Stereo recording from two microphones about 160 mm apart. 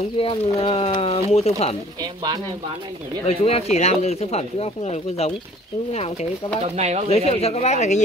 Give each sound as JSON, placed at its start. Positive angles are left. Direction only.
{"t": 0.2, "sound": "speech", "side_deg": 35}
{"t": 3.3, "sound": "speech", "side_deg": 40}
{"t": 7.1, "sound": "speech", "side_deg": 40}